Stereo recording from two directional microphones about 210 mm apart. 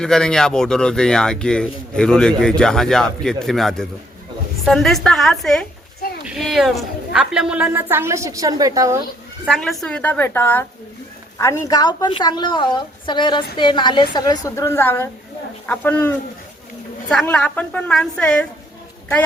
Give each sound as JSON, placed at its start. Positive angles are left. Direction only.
{"t": 0.0, "sound": "a woman's voice", "side_deg": 5}
{"t": 9.5, "sound": "a woman's voice", "side_deg": 0}